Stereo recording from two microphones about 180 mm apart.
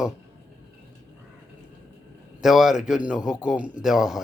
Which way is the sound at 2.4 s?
Centre (ahead or behind).